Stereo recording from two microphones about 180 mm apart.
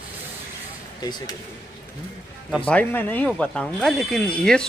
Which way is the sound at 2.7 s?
10° left (ahead or behind).